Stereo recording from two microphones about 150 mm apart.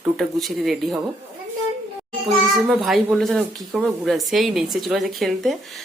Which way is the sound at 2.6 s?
Centre (ahead or behind).